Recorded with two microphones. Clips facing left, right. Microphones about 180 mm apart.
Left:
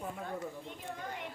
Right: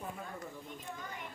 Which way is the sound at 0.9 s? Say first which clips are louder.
Left 4 dB; 70° left (ahead or behind).